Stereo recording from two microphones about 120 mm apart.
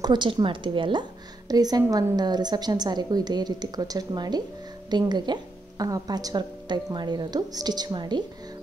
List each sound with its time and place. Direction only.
0.0 s speech: 40° right (ahead or behind)
1.5 s a woman's voice: 35° right (ahead or behind)